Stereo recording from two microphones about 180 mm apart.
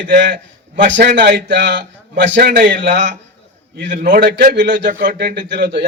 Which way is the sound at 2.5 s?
50° right (ahead or behind).